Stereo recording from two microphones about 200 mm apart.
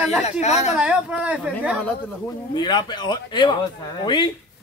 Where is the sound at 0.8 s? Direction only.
5° right (ahead or behind).